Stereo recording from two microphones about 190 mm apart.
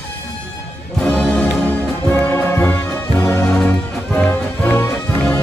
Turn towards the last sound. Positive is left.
turn(degrees=5)  # may be behind; listen again after turning